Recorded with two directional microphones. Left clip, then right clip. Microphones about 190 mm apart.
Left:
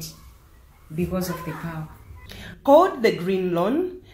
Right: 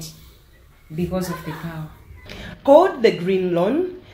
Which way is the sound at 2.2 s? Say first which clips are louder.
Right 3 dB; 10° left (ahead or behind).